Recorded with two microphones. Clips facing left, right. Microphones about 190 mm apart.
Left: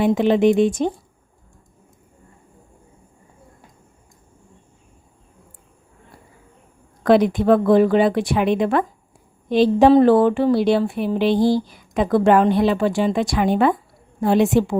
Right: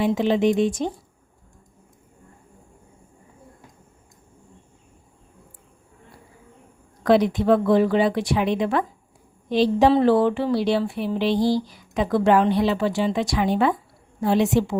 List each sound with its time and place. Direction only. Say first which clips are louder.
0.0 s speech: left 4 dB; 55° left (ahead or behind)
7.0 s speech: left 3 dB; 55° left (ahead or behind)